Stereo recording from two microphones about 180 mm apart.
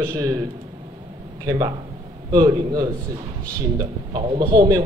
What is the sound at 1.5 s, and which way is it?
A man's voice, 20° right (ahead or behind).